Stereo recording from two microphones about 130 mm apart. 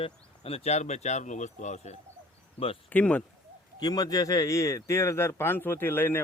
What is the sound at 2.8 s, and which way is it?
Speech, 10° left (ahead or behind).